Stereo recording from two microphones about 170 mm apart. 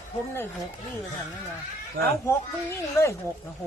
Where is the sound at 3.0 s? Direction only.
15° left (ahead or behind).